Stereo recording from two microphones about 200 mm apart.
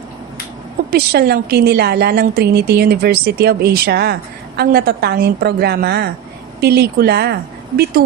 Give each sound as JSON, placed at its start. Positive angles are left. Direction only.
{"t": 0.9, "sound": "a woman's voice", "side_deg": -50}